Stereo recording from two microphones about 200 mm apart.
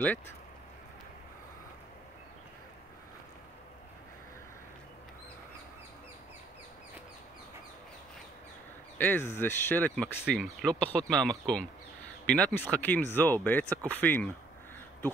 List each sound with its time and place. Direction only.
8.9 s speech: 10° left (ahead or behind)